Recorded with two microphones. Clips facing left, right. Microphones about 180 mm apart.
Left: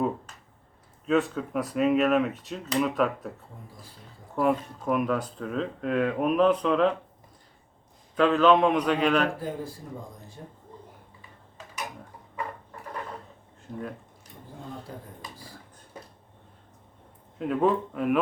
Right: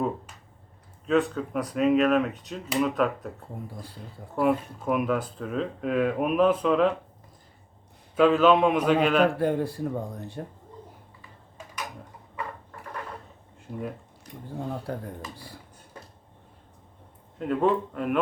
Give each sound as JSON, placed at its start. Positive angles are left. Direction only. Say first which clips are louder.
{"t": 1.0, "sound": "speech", "louder": "right 1 dB", "side_deg": 0}
{"t": 4.4, "sound": "speech", "louder": "right 1 dB", "side_deg": -5}
{"t": 8.1, "sound": "speech", "louder": "right 1 dB", "side_deg": -5}
{"t": 9.4, "sound": "speech", "louder": "right 9 dB", "side_deg": -70}
{"t": 13.7, "sound": "speech", "louder": "right 1 dB", "side_deg": -10}
{"t": 14.9, "sound": "speech", "louder": "right 8 dB", "side_deg": -65}
{"t": 17.3, "sound": "speech", "louder": "even", "side_deg": 0}